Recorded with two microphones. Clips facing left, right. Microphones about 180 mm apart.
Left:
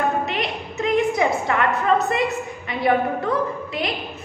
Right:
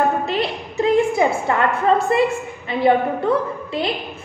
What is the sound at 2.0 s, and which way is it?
A woman's voice, 30° right (ahead or behind).